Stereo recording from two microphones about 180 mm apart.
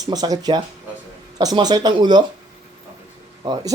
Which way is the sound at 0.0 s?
20° right (ahead or behind).